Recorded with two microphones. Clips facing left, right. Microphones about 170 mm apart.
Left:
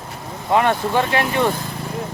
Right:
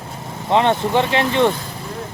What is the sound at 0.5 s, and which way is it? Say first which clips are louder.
Speech: right 1 dB; 20° right (ahead or behind).